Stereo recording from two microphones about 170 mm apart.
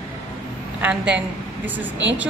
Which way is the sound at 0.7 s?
5° right (ahead or behind).